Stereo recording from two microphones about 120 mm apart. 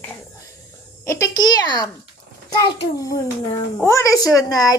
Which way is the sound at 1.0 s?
25° left (ahead or behind).